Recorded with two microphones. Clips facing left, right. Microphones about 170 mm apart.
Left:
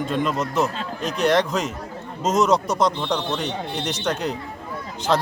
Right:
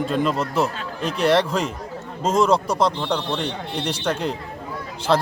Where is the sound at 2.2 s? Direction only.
30° right (ahead or behind).